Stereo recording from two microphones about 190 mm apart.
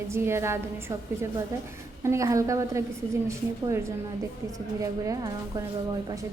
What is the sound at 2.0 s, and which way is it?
A woman's voice, 15° right (ahead or behind).